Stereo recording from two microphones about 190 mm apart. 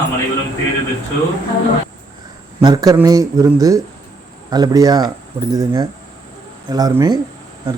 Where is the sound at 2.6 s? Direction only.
20° right (ahead or behind).